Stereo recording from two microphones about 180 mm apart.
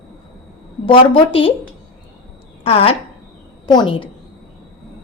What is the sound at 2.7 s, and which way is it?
A woman's voice, 30° left (ahead or behind).